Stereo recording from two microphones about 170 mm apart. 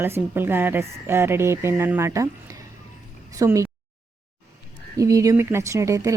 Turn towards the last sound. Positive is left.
turn(degrees=-20)  # may be behind; listen again after turning